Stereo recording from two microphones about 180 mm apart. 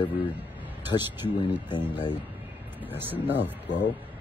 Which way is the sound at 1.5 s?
10° right (ahead or behind).